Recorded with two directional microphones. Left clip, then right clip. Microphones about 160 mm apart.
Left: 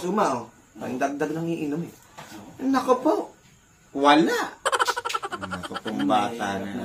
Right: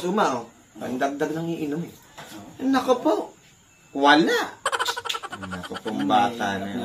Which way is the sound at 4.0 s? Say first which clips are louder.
Right 1 dB; 20° left (ahead or behind).